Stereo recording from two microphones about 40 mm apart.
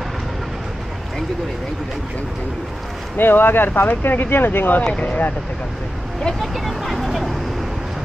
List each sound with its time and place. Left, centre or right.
3.2 s speech: left
4.8 s speech: left
6.4 s vehicle: centre